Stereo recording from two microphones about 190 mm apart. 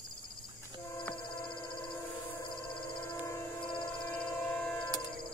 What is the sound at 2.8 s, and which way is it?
Train, 20° left (ahead or behind).